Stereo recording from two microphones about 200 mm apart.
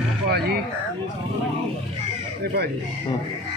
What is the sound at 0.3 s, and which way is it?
Speech, 50° right (ahead or behind).